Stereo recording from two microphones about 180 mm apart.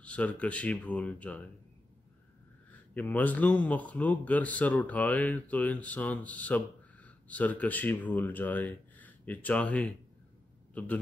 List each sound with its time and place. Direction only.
0.0 s speech: 5° left (ahead or behind)
2.7 s a man's voice: 10° left (ahead or behind)